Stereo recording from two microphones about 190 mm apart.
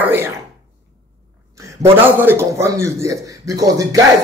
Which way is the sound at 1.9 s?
10° right (ahead or behind).